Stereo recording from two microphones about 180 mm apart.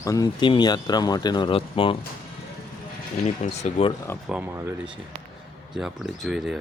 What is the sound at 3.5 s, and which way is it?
Speech, 35° left (ahead or behind).